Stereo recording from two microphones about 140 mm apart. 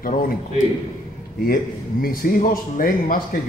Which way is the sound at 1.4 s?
90° left.